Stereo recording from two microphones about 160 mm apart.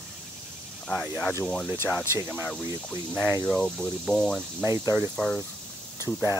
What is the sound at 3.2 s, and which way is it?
Speech, 10° right (ahead or behind).